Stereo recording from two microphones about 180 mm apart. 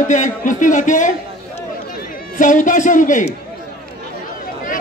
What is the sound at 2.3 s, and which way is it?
Speech, 45° left (ahead or behind).